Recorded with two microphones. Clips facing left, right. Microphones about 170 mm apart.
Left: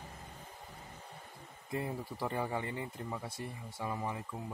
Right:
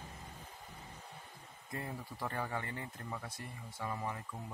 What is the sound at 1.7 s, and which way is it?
Speech, 15° left (ahead or behind).